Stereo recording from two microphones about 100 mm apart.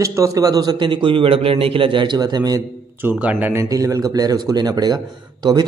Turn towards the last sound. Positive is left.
turn(degrees=-45)  # may be behind; listen again after turning